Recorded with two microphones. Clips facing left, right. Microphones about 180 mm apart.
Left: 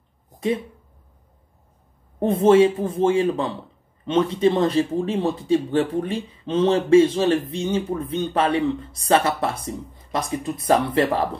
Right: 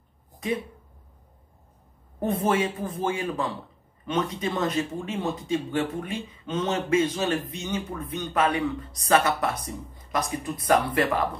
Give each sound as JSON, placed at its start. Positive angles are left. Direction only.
{"t": 2.1, "sound": "speech", "side_deg": 30}